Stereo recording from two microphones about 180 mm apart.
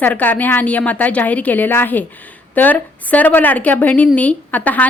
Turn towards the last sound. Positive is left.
turn(degrees=10)  # may be behind; listen again after turning